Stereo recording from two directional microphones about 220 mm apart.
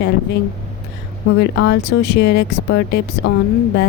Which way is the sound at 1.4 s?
50° left (ahead or behind).